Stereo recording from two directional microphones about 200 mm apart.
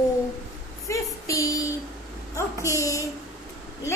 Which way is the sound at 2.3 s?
15° left (ahead or behind).